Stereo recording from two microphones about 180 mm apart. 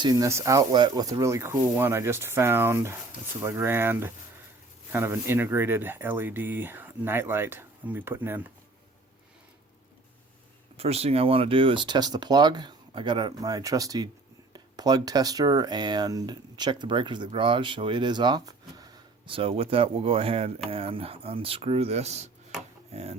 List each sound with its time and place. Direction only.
0.0 s speech: 20° right (ahead or behind)
10.8 s speech: 35° right (ahead or behind)